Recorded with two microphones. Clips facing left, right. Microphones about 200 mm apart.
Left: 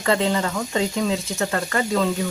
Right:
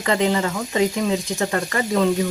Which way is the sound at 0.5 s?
Centre (ahead or behind).